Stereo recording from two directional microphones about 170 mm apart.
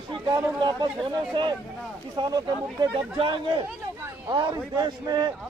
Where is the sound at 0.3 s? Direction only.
25° right (ahead or behind).